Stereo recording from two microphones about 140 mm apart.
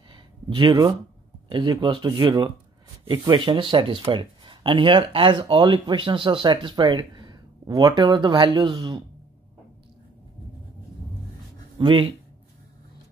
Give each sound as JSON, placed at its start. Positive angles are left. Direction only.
{"t": 0.1, "sound": "a sound", "side_deg": -35}
{"t": 1.5, "sound": "speech", "side_deg": -35}
{"t": 11.8, "sound": "speech", "side_deg": -35}